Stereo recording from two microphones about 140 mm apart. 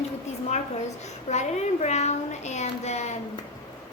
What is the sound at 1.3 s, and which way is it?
A woman's voice, 55° left (ahead or behind).